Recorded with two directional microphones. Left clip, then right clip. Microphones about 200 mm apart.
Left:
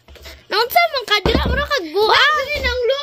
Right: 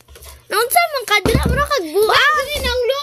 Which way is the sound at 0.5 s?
Centre (ahead or behind).